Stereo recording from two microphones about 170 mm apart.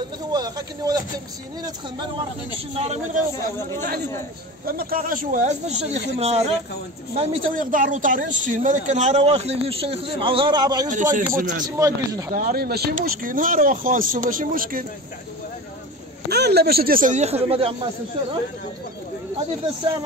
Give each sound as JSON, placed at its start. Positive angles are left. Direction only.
{"t": 0.3, "sound": "speech", "side_deg": -20}
{"t": 2.8, "sound": "speech", "side_deg": -40}
{"t": 4.6, "sound": "speech", "side_deg": -60}
{"t": 7.5, "sound": "speech", "side_deg": -50}
{"t": 10.9, "sound": "speech", "side_deg": -50}
{"t": 11.6, "sound": "speech", "side_deg": -20}
{"t": 12.4, "sound": "speech", "side_deg": -60}
{"t": 16.3, "sound": "speech", "side_deg": -75}